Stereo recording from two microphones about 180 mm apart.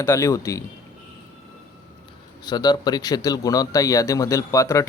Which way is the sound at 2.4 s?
25° left (ahead or behind).